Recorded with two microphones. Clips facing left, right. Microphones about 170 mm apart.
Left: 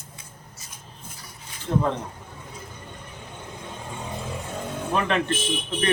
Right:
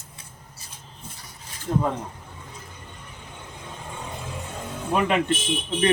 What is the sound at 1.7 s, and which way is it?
Speech, 5° right (ahead or behind).